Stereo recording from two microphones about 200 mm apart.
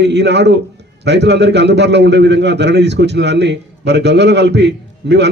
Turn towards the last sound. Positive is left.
turn(degrees=-60)  # may be behind; listen again after turning